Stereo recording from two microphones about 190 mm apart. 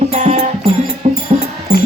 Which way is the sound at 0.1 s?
40° right (ahead or behind).